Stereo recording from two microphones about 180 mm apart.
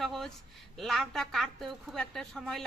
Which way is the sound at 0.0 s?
Centre (ahead or behind).